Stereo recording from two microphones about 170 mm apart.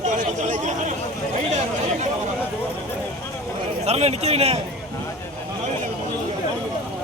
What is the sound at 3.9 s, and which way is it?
Speech, 40° right (ahead or behind).